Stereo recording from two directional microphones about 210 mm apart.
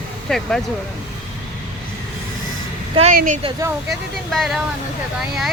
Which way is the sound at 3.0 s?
40° right (ahead or behind).